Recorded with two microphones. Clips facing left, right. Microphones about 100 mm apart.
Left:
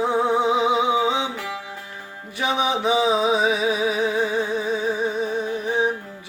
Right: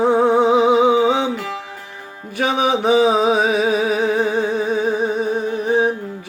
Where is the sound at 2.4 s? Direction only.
55° right (ahead or behind).